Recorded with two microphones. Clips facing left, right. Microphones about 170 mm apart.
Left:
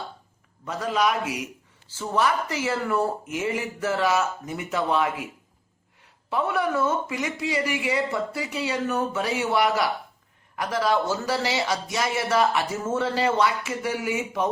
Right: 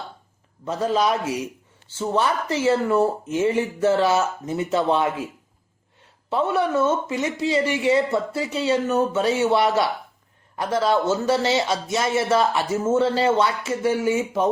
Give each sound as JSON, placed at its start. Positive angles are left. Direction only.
{"t": 0.6, "sound": "speech", "side_deg": -30}
{"t": 6.3, "sound": "speech", "side_deg": -25}